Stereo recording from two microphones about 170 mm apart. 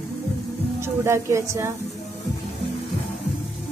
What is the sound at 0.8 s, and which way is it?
Speech, 15° right (ahead or behind).